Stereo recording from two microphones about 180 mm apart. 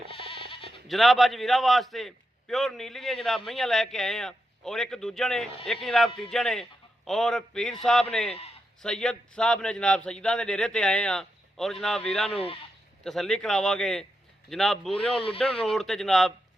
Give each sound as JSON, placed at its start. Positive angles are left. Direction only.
{"t": 0.1, "sound": "sheep", "side_deg": 30}
{"t": 0.9, "sound": "a man's voice", "side_deg": 0}